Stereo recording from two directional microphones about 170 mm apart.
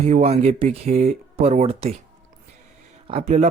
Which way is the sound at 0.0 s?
40° right (ahead or behind).